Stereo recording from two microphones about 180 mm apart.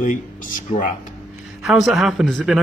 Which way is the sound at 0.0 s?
45° left (ahead or behind).